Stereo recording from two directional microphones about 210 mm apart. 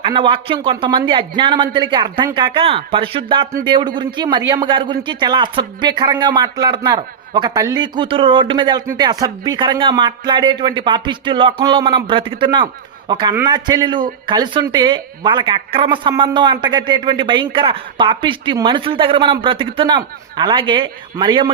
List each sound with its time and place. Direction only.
0.0 s a man's voice: 25° right (ahead or behind)